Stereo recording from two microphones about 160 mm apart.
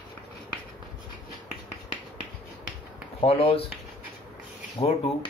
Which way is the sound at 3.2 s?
35° left (ahead or behind).